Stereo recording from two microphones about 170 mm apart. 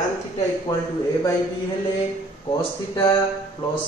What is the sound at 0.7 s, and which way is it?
Speech, 25° left (ahead or behind).